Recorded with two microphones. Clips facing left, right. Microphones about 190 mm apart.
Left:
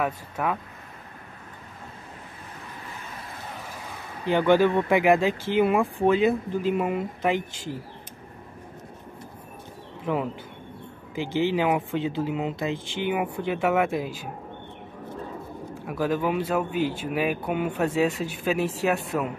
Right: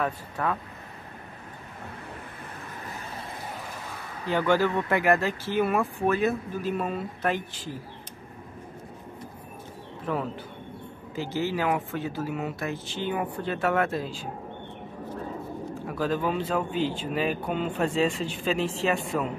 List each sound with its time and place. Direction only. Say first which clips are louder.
0.0 s speech: left 1 dB; 10° left (ahead or behind)
4.3 s speech: left 4 dB; 15° left (ahead or behind)
10.0 s speech: left 3 dB; 15° left (ahead or behind)
15.9 s speech: left 2 dB; 10° left (ahead or behind)